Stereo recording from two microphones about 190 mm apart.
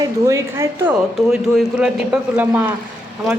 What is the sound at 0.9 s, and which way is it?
A woman's voice, centre (ahead or behind).